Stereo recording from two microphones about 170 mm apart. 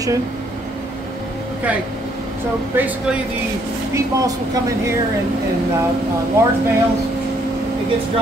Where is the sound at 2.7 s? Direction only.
10° right (ahead or behind).